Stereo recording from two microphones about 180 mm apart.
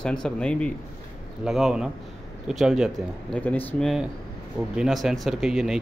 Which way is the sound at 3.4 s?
10° left (ahead or behind).